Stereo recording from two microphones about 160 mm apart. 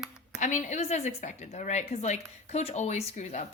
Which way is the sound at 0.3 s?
50° left (ahead or behind).